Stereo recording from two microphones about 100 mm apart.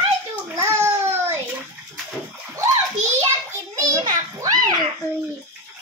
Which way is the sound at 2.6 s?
30° right (ahead or behind).